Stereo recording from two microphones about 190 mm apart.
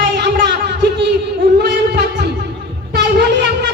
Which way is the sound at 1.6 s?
60° right (ahead or behind).